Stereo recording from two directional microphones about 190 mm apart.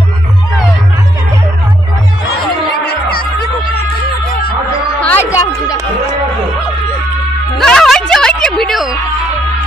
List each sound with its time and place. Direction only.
2.9 s music: 55° left (ahead or behind)
5.0 s a sound: 10° left (ahead or behind)
7.5 s music: centre (ahead or behind)